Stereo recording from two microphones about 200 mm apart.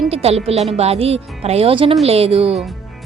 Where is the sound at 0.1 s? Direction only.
30° right (ahead or behind).